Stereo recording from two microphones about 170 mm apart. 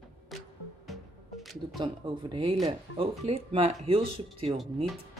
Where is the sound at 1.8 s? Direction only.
30° right (ahead or behind).